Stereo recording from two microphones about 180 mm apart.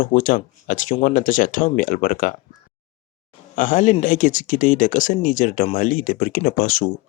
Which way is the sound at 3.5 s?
45° left (ahead or behind).